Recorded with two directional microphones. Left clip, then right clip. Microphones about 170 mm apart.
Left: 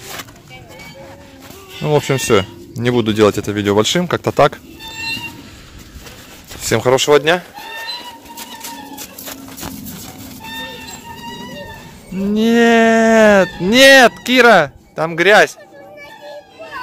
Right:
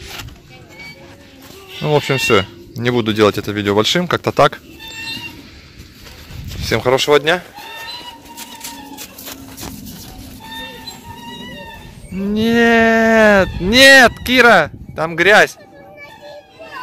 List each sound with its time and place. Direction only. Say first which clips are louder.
1.9 s speech: even; 10° left (ahead or behind)
6.6 s speech: left 1 dB; 20° left (ahead or behind)
8.6 s a sound: left 1 dB; 70° left (ahead or behind)
12.2 s speech: left 1 dB; 10° left (ahead or behind)